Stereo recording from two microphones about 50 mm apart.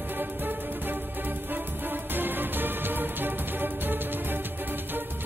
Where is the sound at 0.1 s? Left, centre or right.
Right.